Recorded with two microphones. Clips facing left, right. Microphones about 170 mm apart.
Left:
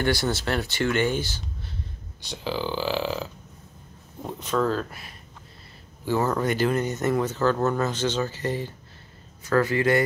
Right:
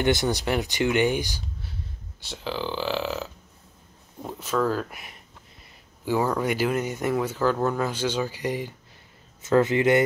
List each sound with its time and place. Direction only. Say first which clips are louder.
0.0 s speech: right 2 dB; 20° right (ahead or behind)
2.2 s speech: left 1 dB; centre (ahead or behind); by 10.0 s 20° right (ahead or behind)